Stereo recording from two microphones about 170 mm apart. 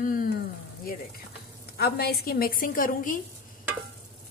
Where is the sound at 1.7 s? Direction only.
65° left (ahead or behind).